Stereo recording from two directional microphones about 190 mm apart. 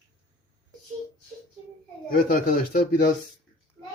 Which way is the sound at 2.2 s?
50° left (ahead or behind).